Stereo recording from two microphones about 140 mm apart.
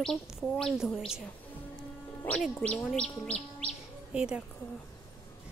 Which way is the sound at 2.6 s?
10° left (ahead or behind).